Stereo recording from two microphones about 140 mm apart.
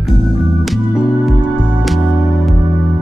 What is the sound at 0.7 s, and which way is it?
Music, 5° right (ahead or behind).